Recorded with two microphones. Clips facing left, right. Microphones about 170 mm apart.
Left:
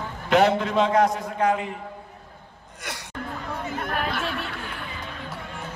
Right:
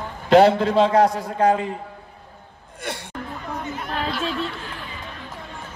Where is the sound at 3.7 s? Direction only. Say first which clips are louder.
Left 1 dB; 55° left (ahead or behind).